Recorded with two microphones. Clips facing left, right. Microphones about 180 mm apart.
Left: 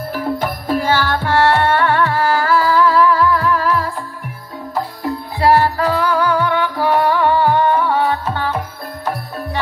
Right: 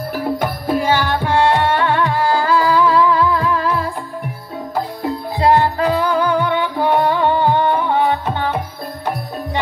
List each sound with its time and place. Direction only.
0.4 s music: 10° right (ahead or behind)
5.0 s music: 20° right (ahead or behind)